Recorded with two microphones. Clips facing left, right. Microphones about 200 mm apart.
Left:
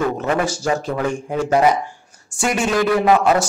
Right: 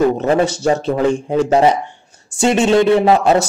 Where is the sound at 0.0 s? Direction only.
30° right (ahead or behind).